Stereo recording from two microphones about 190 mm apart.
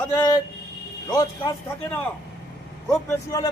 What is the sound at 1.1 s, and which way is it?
Speech, 20° left (ahead or behind).